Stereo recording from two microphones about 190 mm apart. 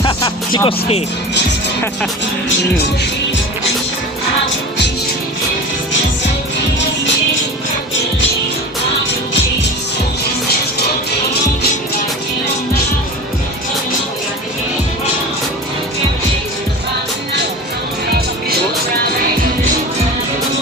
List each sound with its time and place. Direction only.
0.0 s speech: 25° left (ahead or behind)